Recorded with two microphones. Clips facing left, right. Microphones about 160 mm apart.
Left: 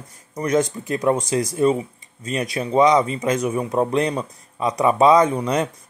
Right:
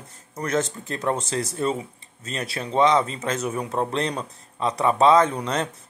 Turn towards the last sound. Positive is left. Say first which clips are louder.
# left 4 dB
turn(degrees=10)  # may be behind; listen again after turning